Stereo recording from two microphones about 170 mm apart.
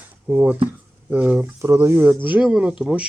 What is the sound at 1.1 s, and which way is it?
Speech, 10° right (ahead or behind).